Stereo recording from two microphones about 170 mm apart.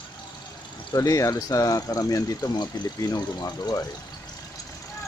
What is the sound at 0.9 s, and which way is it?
Speech, 20° left (ahead or behind).